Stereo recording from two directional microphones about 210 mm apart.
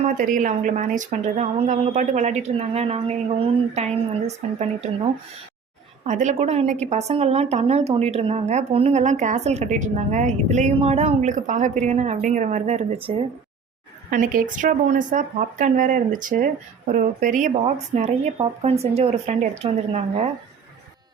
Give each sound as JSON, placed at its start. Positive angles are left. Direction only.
{"t": 0.0, "sound": "a woman's voice", "side_deg": -40}
{"t": 6.1, "sound": "a woman's voice", "side_deg": -35}
{"t": 14.1, "sound": "a woman's voice", "side_deg": -40}